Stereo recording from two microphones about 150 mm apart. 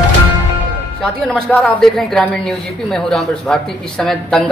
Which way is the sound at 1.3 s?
10° left (ahead or behind).